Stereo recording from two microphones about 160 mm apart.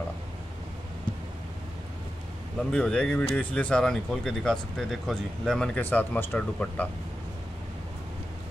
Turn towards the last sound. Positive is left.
turn(degrees=10)  # may be behind; listen again after turning